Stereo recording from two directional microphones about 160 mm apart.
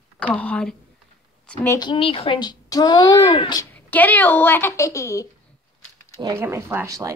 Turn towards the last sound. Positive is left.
turn(degrees=-20)  # may be behind; listen again after turning